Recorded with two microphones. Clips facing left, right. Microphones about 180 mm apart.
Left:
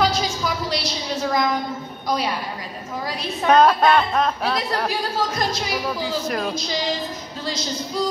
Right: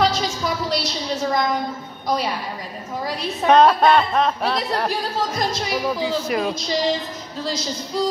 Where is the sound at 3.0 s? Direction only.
Centre (ahead or behind).